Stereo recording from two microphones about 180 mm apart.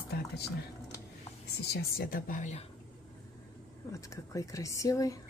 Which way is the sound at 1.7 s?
55° left (ahead or behind).